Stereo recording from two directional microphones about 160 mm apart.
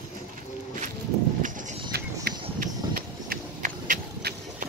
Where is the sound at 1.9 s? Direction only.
90° right.